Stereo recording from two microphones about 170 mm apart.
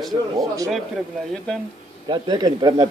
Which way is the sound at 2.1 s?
25° right (ahead or behind).